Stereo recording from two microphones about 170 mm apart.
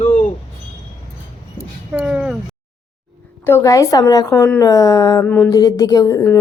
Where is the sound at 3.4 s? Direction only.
15° left (ahead or behind).